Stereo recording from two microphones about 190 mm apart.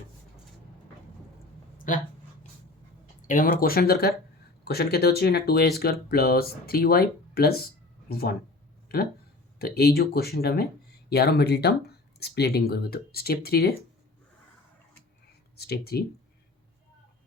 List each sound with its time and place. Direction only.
1.9 s speech: 45° left (ahead or behind)
3.2 s speech: 45° left (ahead or behind)
9.6 s speech: 55° left (ahead or behind)
15.5 s speech: 55° left (ahead or behind)